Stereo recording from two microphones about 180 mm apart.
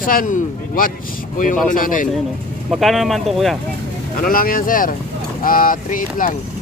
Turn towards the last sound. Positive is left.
turn(degrees=50)  # may be behind; listen again after turning